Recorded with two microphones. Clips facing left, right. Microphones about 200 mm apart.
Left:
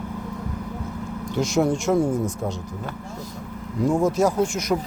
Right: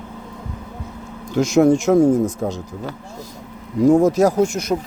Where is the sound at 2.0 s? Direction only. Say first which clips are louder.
Right 8 dB; 20° right (ahead or behind).